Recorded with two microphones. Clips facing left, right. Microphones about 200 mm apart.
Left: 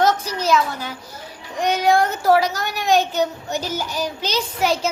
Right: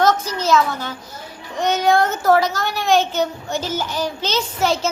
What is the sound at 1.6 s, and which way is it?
A child's voice, 10° left (ahead or behind).